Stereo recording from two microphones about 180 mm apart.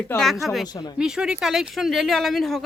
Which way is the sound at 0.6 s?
20° left (ahead or behind).